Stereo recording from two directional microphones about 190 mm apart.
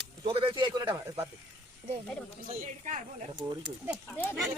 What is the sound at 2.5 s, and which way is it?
Speech, 40° right (ahead or behind).